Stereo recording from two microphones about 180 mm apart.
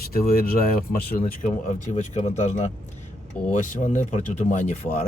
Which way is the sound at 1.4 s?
45° left (ahead or behind).